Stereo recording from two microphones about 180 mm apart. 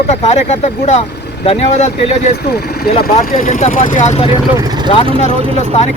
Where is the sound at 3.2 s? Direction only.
50° left (ahead or behind).